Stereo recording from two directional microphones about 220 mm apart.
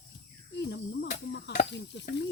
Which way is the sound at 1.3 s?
50° left (ahead or behind).